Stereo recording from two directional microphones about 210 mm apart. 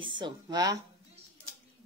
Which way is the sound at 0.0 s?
20° right (ahead or behind).